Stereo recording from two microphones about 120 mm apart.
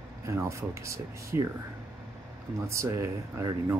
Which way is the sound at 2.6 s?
25° right (ahead or behind).